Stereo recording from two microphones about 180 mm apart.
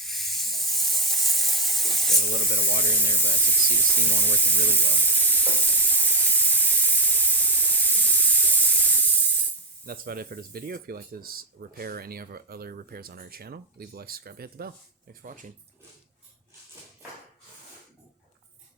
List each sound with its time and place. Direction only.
0.0 s hiss: centre (ahead or behind)
2.1 s speech: 60° right (ahead or behind)
3.4 s speech: 5° left (ahead or behind)
3.9 s speech: 65° right (ahead or behind)
5.0 s sizzle: 10° left (ahead or behind)
9.8 s speech: 55° right (ahead or behind)